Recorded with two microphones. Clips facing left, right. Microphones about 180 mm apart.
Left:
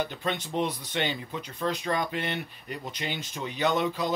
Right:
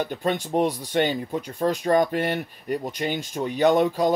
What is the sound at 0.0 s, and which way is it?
Speech, 45° right (ahead or behind).